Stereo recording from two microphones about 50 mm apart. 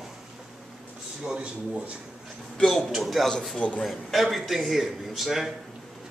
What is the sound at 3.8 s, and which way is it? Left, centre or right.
Speech, centre.